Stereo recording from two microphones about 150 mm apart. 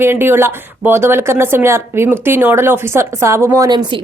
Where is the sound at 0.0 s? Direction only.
15° right (ahead or behind).